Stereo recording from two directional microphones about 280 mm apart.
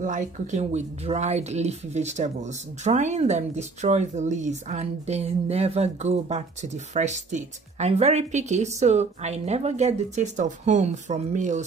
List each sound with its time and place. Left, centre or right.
0.0 s speech: right